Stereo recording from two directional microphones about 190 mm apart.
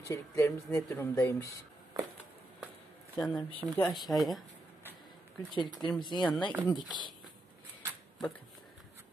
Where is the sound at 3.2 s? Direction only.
5° left (ahead or behind).